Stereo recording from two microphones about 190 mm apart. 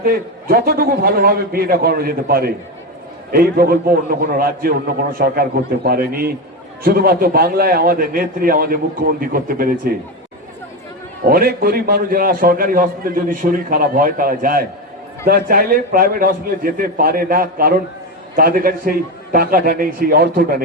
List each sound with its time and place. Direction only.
0.0 s a man's voice: 50° right (ahead or behind)
11.2 s a man's voice: 50° right (ahead or behind)